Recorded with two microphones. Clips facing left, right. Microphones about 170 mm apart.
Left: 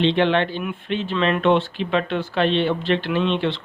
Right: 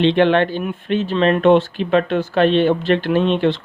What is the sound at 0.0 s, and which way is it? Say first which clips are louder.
Speech: right 4 dB; 50° right (ahead or behind).